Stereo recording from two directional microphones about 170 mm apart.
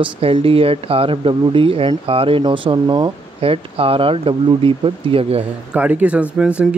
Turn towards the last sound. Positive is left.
turn(degrees=-10)  # may be behind; listen again after turning